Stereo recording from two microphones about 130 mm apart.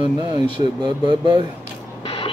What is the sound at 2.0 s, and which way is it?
Vehicle, 40° left (ahead or behind).